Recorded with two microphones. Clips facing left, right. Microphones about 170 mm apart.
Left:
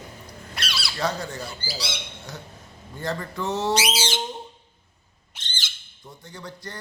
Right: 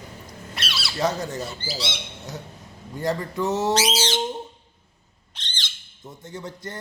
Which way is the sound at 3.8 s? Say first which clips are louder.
Right 3 dB; 10° left (ahead or behind).